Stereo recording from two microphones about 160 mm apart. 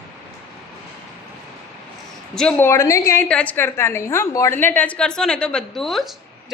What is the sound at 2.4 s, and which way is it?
A woman's voice, 10° left (ahead or behind).